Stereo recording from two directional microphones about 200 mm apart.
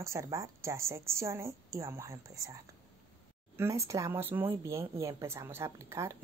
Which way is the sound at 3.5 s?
15° right (ahead or behind).